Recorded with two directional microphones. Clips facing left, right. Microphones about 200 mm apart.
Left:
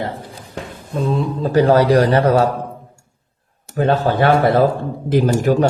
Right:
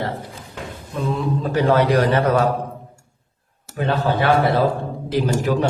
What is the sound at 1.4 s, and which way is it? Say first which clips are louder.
A man's voice: left 5 dB; 35° left (ahead or behind).